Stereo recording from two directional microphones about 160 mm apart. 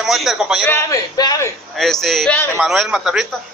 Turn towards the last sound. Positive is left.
turn(degrees=-5)  # may be behind; listen again after turning